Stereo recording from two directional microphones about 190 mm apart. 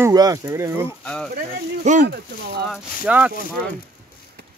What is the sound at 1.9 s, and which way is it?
Speech, 40° right (ahead or behind).